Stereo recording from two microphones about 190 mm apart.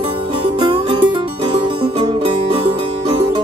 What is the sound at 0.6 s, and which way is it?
Music, 25° right (ahead or behind).